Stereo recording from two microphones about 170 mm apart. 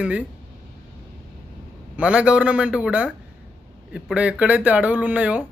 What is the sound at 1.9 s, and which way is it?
Speech, 5° right (ahead or behind).